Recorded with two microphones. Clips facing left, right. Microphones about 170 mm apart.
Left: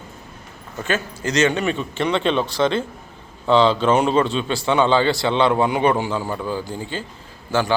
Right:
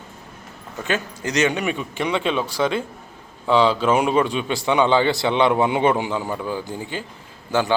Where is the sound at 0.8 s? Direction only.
15° right (ahead or behind).